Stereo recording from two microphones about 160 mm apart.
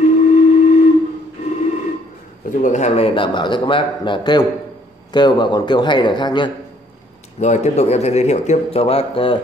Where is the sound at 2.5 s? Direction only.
50° left (ahead or behind); by 6.5 s 30° left (ahead or behind).